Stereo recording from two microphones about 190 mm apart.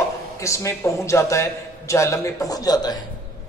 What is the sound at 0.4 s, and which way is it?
A man's voice, 15° left (ahead or behind).